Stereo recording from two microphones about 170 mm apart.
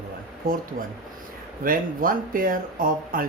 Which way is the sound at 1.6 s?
55° right (ahead or behind).